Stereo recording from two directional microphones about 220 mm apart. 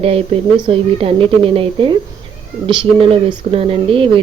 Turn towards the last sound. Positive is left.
turn(degrees=-25)  # may be behind; listen again after turning